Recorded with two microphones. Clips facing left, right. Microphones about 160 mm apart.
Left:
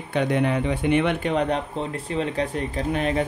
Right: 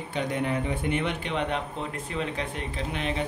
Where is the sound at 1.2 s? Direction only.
40° left (ahead or behind).